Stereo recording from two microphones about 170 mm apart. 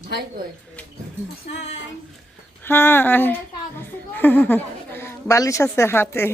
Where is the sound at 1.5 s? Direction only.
40° left (ahead or behind).